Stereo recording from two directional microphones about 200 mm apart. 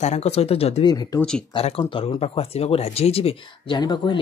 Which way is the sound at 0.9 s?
20° left (ahead or behind).